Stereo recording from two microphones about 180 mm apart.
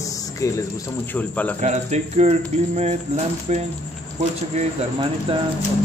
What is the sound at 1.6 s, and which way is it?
Speech, 40° right (ahead or behind).